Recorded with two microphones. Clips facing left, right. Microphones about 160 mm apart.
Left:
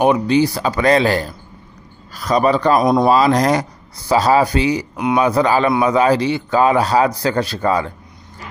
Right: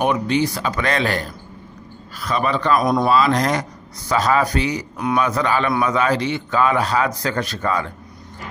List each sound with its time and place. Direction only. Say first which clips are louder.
0.0 s a man's voice: left 5 dB; 35° left (ahead or behind)
4.9 s speech: left 1 dB; 15° left (ahead or behind)
5.2 s a man's voice: left 7 dB; 35° left (ahead or behind)